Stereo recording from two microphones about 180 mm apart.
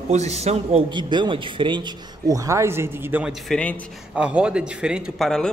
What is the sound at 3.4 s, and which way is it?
A man's voice, 5° left (ahead or behind).